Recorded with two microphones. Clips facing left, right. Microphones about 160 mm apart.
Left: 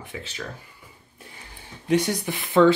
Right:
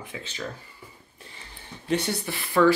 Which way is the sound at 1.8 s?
10° left (ahead or behind).